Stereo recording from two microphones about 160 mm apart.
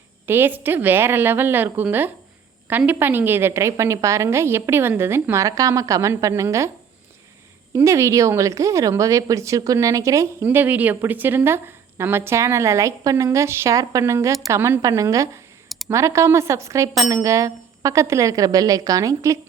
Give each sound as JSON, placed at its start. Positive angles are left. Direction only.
{"t": 0.3, "sound": "a woman's voice", "side_deg": -15}
{"t": 7.7, "sound": "speech", "side_deg": -20}